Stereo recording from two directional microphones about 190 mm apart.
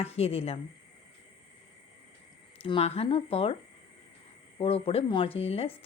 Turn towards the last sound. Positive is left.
turn(degrees=30)  # may be behind; listen again after turning